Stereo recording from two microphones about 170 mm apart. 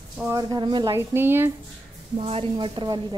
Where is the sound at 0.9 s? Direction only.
15° right (ahead or behind).